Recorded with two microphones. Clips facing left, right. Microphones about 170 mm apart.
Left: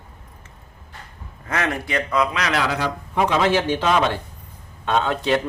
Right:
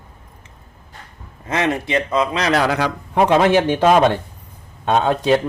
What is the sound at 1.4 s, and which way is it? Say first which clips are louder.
Speech: right 4 dB; 20° right (ahead or behind).